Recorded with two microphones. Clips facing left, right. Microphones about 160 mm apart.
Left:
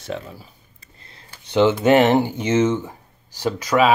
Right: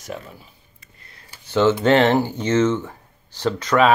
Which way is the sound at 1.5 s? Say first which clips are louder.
Left 1 dB; 15° left (ahead or behind).